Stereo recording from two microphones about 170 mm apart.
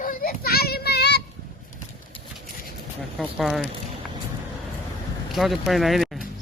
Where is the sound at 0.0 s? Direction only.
55° left (ahead or behind); by 1.2 s 80° left.